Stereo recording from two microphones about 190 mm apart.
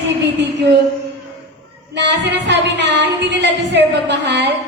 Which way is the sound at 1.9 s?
65° right (ahead or behind).